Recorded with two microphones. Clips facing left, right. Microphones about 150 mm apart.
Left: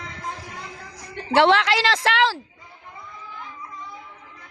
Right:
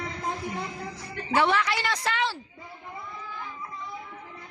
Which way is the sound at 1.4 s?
90° left.